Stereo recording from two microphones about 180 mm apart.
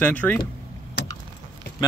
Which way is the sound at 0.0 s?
10° left (ahead or behind).